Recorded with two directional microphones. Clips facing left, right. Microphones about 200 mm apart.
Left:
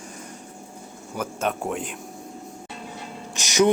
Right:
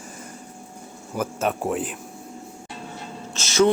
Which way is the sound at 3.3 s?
15° left (ahead or behind).